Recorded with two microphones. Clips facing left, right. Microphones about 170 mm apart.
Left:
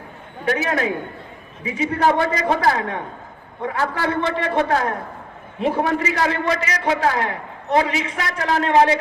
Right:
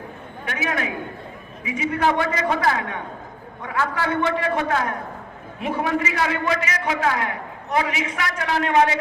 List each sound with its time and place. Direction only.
0.4 s a man's voice: 35° left (ahead or behind)